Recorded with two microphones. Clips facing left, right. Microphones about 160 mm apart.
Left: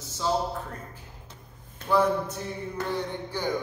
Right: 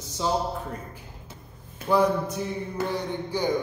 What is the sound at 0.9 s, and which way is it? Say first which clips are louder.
Mantra: right 3 dB; 10° right (ahead or behind).